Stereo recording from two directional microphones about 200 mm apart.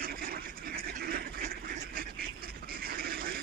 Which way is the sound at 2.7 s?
50° right (ahead or behind).